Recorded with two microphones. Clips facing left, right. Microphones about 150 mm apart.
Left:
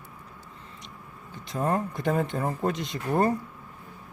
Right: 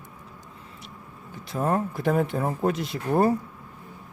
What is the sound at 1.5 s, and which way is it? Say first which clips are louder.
Speech: right 2 dB; 5° right (ahead or behind).